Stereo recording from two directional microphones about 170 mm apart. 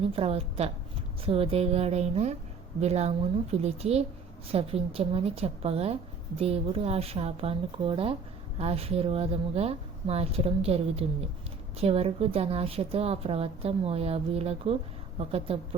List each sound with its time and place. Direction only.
0.0 s speech: 35° right (ahead or behind)